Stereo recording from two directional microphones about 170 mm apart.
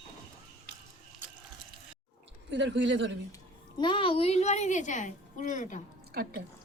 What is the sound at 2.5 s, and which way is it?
Speech, 90° right.